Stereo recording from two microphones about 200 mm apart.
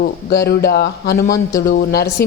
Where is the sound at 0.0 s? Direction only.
50° left (ahead or behind).